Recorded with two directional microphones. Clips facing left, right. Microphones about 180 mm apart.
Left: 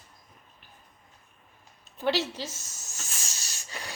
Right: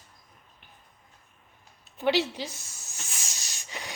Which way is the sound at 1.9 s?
15° right (ahead or behind).